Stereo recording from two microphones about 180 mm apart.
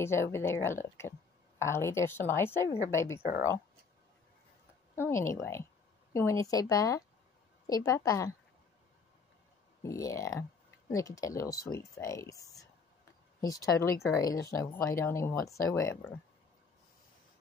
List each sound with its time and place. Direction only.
0.0 s speech: 15° left (ahead or behind)
4.9 s speech: 15° left (ahead or behind)
9.8 s speech: 20° left (ahead or behind)